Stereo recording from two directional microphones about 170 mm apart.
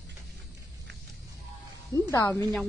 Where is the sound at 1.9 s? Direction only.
15° left (ahead or behind).